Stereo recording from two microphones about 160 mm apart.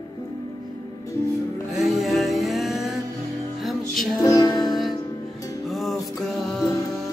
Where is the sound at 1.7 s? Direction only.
Centre (ahead or behind).